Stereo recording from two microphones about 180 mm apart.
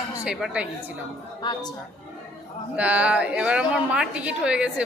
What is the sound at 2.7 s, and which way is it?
A woman's voice, 5° right (ahead or behind).